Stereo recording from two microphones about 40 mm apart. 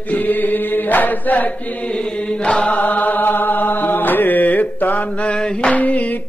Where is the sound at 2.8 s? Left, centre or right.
Left.